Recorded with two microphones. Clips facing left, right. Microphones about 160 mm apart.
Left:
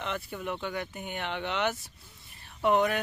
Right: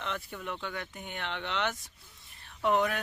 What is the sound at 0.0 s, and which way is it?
Speech, 5° left (ahead or behind).